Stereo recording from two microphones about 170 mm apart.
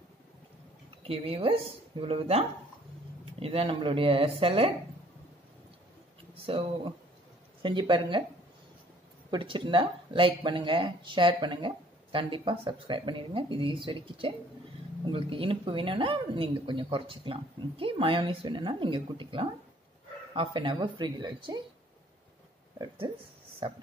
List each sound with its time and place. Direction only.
1.0 s speech: 35° right (ahead or behind)
6.4 s speech: 30° right (ahead or behind)
9.3 s speech: 30° right (ahead or behind)
22.8 s speech: 25° right (ahead or behind)